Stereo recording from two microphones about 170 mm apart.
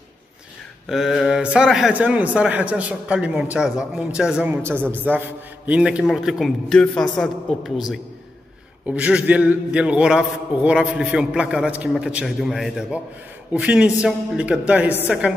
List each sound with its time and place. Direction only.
0.8 s a man's voice: centre (ahead or behind)